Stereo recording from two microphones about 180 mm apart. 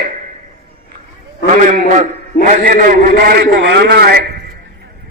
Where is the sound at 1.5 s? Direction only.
40° right (ahead or behind); by 4.2 s 60° right (ahead or behind).